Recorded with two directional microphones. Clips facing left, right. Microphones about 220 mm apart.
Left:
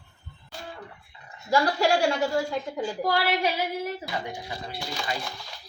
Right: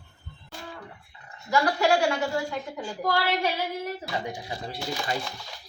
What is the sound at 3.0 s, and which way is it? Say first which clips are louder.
Speech: even; 15° left (ahead or behind).